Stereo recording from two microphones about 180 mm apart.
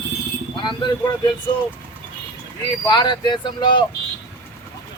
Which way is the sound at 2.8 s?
25° left (ahead or behind).